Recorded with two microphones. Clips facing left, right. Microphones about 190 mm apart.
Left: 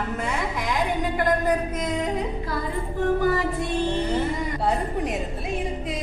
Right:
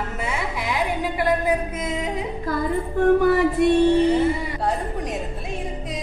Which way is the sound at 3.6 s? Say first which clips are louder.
Right 11 dB; 70° right (ahead or behind).